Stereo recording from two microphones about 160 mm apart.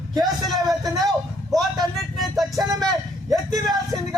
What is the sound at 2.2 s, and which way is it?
Music, centre (ahead or behind).